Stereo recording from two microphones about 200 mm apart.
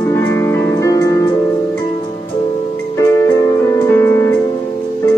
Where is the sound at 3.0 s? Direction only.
15° left (ahead or behind).